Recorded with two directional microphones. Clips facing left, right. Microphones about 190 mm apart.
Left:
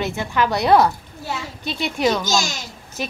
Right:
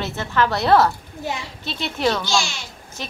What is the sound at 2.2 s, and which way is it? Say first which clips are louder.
Speech: left 1 dB; 40° left (ahead or behind).